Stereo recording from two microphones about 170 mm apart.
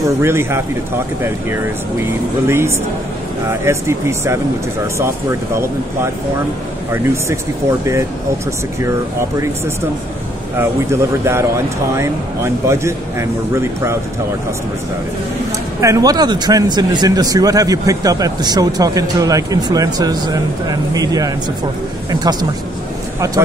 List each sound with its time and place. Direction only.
0.2 s a man's voice: 15° right (ahead or behind)
2.0 s a man's voice: 15° right (ahead or behind)
10.6 s a man's voice: 15° right (ahead or behind)
15.8 s a man's voice: 20° right (ahead or behind)